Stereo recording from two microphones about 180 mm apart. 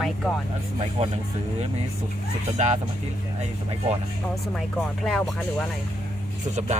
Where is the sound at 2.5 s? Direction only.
40° right (ahead or behind).